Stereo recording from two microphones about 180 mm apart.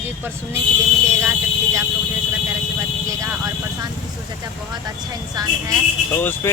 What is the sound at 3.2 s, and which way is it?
Speech, 15° right (ahead or behind).